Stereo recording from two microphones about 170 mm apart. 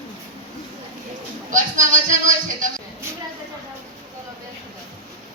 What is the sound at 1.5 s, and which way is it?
Music, 50° right (ahead or behind).